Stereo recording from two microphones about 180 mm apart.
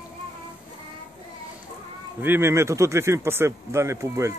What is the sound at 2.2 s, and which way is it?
Speech, 15° right (ahead or behind).